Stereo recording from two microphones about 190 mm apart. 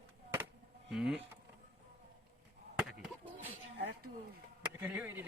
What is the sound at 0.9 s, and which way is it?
Speech, 5° right (ahead or behind).